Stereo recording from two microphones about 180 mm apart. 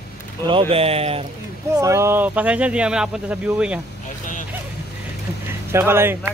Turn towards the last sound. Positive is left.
turn(degrees=-15)  # may be behind; listen again after turning